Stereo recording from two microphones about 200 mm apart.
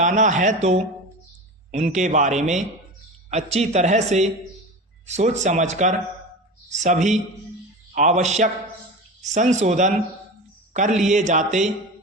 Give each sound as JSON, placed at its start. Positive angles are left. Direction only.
{"t": 0.0, "sound": "speech", "side_deg": -40}